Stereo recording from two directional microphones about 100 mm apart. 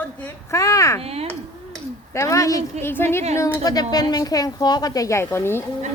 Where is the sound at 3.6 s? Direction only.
40° left (ahead or behind).